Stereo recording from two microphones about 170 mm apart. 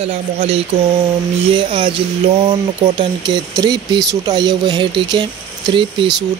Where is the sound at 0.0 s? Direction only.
35° right (ahead or behind).